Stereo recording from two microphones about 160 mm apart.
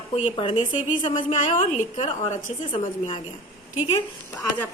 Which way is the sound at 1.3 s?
50° left (ahead or behind).